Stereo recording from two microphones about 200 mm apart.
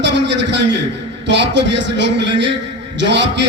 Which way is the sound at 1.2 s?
60° right (ahead or behind).